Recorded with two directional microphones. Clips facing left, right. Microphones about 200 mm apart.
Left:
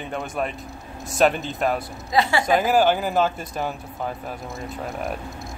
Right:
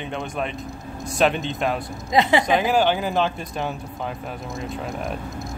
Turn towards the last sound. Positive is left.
turn(degrees=5)  # may be behind; listen again after turning